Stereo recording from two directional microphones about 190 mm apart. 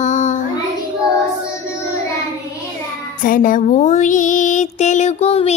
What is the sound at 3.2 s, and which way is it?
Music, 50° left (ahead or behind).